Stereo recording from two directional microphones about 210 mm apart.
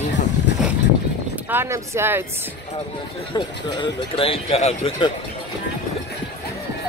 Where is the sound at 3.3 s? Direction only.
25° left (ahead or behind).